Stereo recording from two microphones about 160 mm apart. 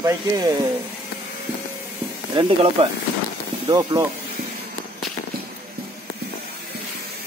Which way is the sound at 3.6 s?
25° right (ahead or behind).